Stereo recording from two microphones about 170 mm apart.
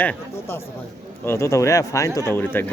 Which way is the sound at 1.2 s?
15° left (ahead or behind).